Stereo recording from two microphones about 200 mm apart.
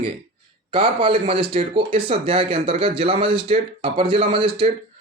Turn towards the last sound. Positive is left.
turn(degrees=-25)  # may be behind; listen again after turning